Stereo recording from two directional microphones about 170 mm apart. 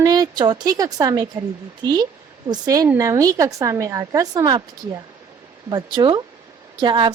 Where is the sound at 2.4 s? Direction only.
20° right (ahead or behind).